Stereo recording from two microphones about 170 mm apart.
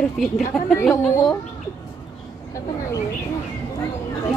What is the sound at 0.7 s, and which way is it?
Speech, 15° left (ahead or behind).